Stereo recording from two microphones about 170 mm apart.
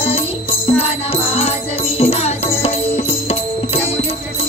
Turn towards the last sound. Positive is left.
turn(degrees=35)  # may be behind; listen again after turning